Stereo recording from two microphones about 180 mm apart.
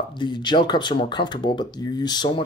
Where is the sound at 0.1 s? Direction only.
25° left (ahead or behind).